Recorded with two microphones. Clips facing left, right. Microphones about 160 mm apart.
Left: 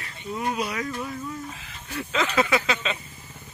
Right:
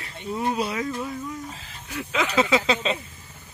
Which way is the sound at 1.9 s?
15° right (ahead or behind).